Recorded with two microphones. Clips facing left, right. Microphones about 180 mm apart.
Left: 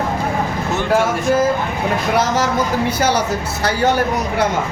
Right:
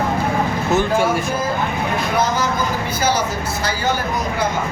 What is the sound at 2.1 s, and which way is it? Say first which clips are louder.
Speech: left 2 dB; 80° left.